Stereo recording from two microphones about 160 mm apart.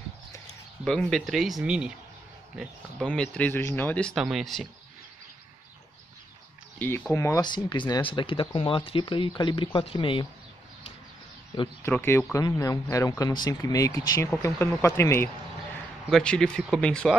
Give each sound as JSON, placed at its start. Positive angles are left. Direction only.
{"t": 0.8, "sound": "speech", "side_deg": 5}
{"t": 7.1, "sound": "speech", "side_deg": 20}
{"t": 11.8, "sound": "speech", "side_deg": 15}
{"t": 16.1, "sound": "speech", "side_deg": 5}